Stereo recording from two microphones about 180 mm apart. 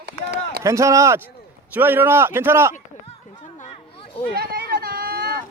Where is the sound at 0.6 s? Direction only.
15° right (ahead or behind).